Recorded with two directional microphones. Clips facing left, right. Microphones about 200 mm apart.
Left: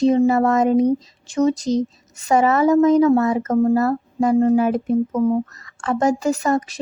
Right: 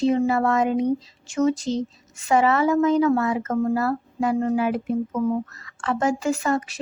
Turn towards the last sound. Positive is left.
turn(degrees=40)  # may be behind; listen again after turning